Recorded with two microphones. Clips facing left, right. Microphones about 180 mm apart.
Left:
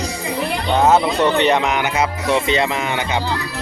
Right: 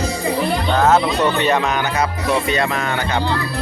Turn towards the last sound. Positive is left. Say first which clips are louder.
# even
turn(degrees=15)  # may be behind; listen again after turning